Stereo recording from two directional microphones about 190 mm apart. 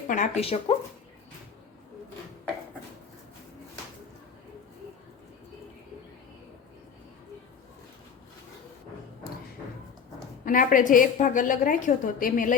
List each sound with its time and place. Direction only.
0.1 s speech: 35° left (ahead or behind)
10.4 s a woman's voice: 45° left (ahead or behind)